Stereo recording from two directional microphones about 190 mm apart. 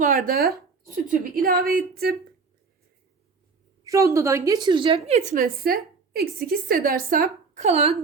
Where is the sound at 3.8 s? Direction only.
15° right (ahead or behind).